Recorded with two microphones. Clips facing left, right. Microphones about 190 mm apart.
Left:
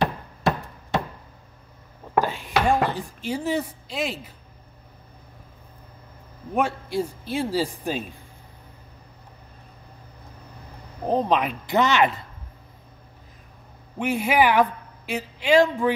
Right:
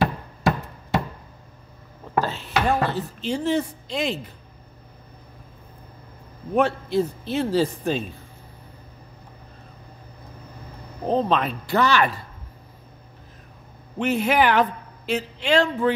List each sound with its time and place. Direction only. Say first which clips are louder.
2.1 s speech: left 1 dB; 15° left (ahead or behind)
6.5 s speech: right 4 dB; 10° left (ahead or behind)
11.1 s speech: even; 10° left (ahead or behind)
13.9 s a man's voice: right 1 dB; 10° left (ahead or behind)